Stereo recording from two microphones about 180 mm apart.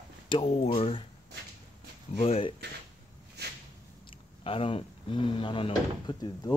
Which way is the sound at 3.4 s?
65° right (ahead or behind).